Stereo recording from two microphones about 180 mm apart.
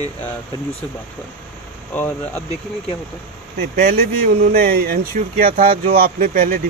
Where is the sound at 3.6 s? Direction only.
60° right (ahead or behind).